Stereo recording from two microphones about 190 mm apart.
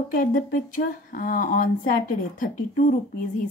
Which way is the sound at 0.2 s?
45° left (ahead or behind).